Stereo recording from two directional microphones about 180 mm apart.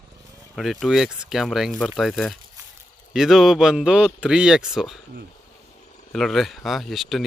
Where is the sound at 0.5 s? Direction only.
Centre (ahead or behind).